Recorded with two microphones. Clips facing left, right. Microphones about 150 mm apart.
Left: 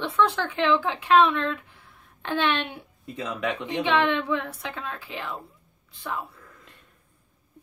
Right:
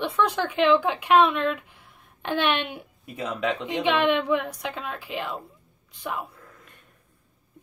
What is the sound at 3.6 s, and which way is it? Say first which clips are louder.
Speech: even; 15° right (ahead or behind).